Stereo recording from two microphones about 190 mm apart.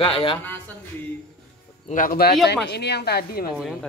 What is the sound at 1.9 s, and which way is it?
Speech, 45° left (ahead or behind).